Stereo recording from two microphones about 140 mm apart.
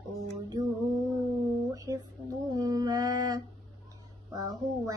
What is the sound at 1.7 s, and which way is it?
Mantra, 25° right (ahead or behind).